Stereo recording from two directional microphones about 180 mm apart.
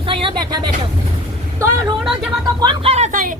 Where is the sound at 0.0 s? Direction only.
30° right (ahead or behind).